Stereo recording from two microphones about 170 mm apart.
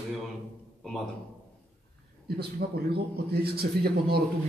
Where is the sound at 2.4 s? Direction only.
70° right (ahead or behind).